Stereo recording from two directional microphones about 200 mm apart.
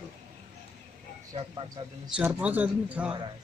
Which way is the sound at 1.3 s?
20° right (ahead or behind).